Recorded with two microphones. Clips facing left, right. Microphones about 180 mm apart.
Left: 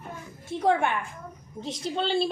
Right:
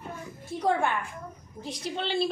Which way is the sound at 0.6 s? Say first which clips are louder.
Left 2 dB; 25° left (ahead or behind).